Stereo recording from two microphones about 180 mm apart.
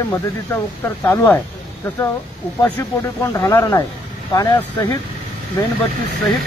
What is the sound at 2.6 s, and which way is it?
Speech, 15° left (ahead or behind).